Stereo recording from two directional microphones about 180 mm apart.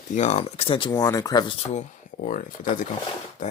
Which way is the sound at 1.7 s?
40° left (ahead or behind).